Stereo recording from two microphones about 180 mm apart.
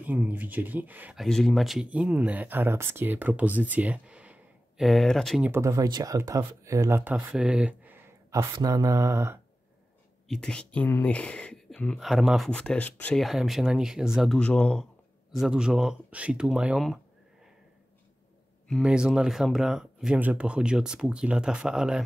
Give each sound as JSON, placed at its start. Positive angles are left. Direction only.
{"t": 0.0, "sound": "speech", "side_deg": -10}
{"t": 5.5, "sound": "speech", "side_deg": -15}
{"t": 8.4, "sound": "speech", "side_deg": -20}
{"t": 10.2, "sound": "speech", "side_deg": 5}
{"t": 18.7, "sound": "speech", "side_deg": -5}